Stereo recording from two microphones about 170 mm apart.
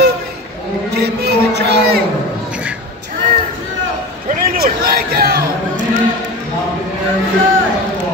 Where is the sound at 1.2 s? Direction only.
75° right (ahead or behind).